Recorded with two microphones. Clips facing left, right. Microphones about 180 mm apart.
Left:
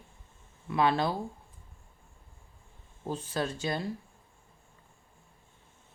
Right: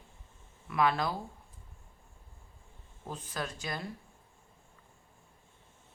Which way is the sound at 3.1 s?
30° left (ahead or behind).